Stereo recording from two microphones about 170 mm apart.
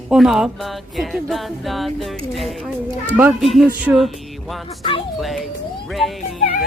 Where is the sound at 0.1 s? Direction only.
Centre (ahead or behind).